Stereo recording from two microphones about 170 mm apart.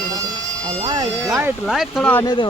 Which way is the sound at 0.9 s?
20° right (ahead or behind).